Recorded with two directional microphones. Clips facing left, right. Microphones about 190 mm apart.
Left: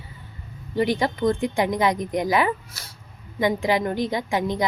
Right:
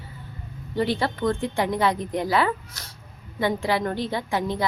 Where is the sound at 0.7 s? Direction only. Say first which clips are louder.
Left 2 dB; 15° left (ahead or behind).